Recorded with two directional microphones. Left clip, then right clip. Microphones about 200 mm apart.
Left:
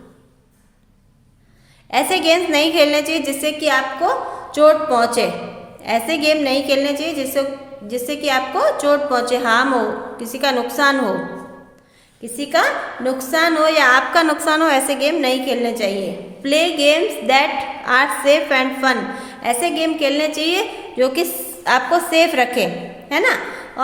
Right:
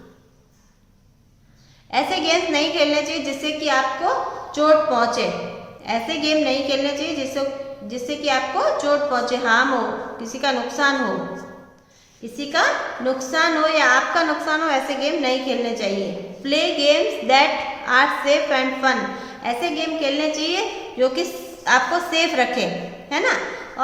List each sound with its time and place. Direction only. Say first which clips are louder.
1.9 s a woman's voice: left 4 dB; 50° left (ahead or behind)
12.4 s a woman's voice: left 3 dB; 50° left (ahead or behind)